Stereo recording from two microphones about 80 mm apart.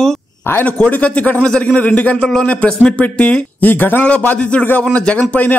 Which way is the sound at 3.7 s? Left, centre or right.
Left.